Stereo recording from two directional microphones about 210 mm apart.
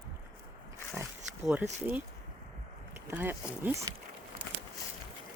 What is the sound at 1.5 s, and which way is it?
Speech, 10° right (ahead or behind).